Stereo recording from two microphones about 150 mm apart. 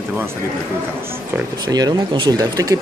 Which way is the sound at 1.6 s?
25° right (ahead or behind).